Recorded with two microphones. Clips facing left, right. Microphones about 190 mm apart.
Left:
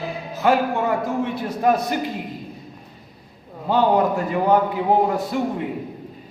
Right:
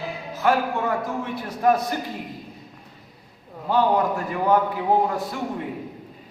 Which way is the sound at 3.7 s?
25° left (ahead or behind).